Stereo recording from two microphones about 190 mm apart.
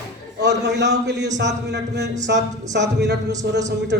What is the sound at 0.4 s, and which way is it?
A man's voice, 65° right (ahead or behind).